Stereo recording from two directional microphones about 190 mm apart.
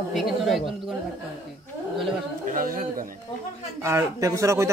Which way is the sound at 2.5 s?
45° right (ahead or behind).